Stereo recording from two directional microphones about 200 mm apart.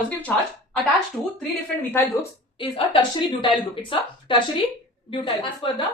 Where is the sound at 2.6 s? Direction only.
25° left (ahead or behind).